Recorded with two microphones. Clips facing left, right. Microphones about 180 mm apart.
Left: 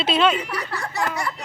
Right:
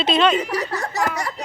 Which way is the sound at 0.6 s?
40° right (ahead or behind).